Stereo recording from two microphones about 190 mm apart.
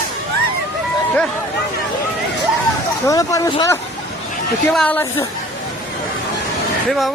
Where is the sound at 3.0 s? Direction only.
15° left (ahead or behind).